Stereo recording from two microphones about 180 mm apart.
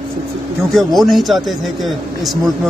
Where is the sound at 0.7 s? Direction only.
Centre (ahead or behind).